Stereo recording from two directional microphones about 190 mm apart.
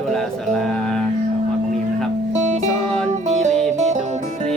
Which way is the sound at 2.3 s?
40° right (ahead or behind).